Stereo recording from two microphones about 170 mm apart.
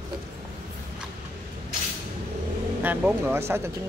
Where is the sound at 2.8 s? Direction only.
10° right (ahead or behind).